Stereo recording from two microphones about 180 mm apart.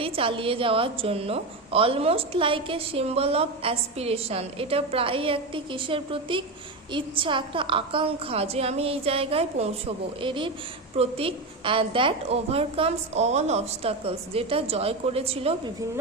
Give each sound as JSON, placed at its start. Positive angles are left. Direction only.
{"t": 0.0, "sound": "a woman's voice", "side_deg": -30}